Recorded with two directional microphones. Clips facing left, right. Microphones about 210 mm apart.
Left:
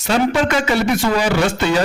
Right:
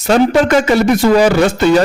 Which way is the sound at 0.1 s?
45° right (ahead or behind).